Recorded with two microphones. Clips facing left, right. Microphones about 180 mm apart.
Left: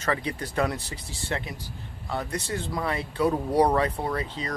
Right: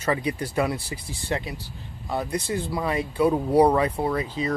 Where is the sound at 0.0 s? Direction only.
15° right (ahead or behind).